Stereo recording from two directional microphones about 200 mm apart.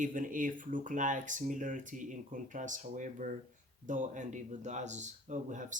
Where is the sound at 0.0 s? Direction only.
40° right (ahead or behind).